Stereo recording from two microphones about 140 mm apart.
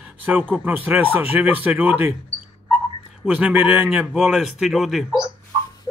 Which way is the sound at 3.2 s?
5° right (ahead or behind).